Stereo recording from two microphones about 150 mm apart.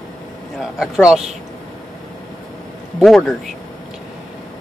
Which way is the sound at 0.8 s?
5° right (ahead or behind).